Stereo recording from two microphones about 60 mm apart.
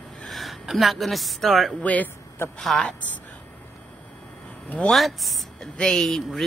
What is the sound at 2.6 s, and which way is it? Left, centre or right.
Speech, centre.